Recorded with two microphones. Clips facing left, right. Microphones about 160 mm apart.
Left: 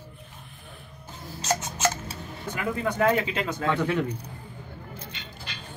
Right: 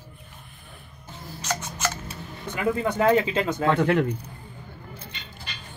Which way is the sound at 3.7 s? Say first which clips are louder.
Right 4 dB; 55° right (ahead or behind).